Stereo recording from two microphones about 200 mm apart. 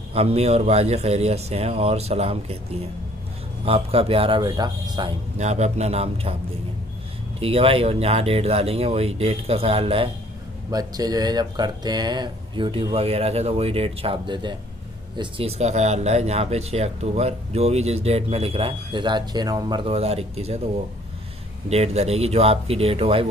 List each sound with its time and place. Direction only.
0.1 s speech: 30° right (ahead or behind)
5.4 s speech: 35° right (ahead or behind)
7.3 s speech: 30° right (ahead or behind)
21.6 s speech: 30° right (ahead or behind)